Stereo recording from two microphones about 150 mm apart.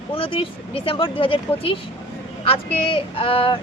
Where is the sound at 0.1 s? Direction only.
35° left (ahead or behind).